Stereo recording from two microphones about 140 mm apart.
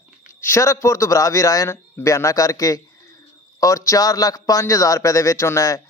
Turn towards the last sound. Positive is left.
turn(degrees=20)  # may be behind; listen again after turning